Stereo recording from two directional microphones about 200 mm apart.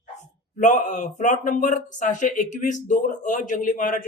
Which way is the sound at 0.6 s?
35° left (ahead or behind).